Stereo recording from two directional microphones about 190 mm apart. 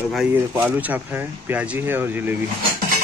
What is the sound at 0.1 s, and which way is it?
Speech, 5° right (ahead or behind).